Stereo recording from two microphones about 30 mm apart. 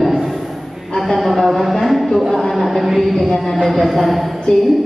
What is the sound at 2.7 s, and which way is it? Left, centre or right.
A woman's voice, centre.